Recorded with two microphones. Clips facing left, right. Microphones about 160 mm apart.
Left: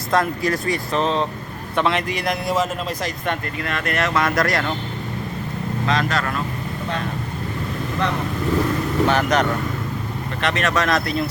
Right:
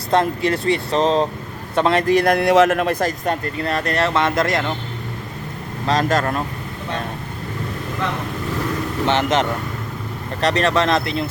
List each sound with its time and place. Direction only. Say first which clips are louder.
0.1 s a man's voice: right 2 dB; 30° right (ahead or behind); by 3.1 s 60° right (ahead or behind)
3.2 s speech: right 3 dB; 35° right (ahead or behind)
5.9 s speech: right 5 dB; 40° right (ahead or behind)
9.0 s speech: right 2 dB; 20° right (ahead or behind)
10.4 s speech: right 4 dB; 35° right (ahead or behind)